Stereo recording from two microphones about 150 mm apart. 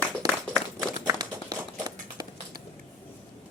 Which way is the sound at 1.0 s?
25° right (ahead or behind).